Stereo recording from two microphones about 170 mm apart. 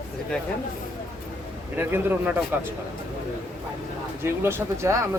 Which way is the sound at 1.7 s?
10° right (ahead or behind).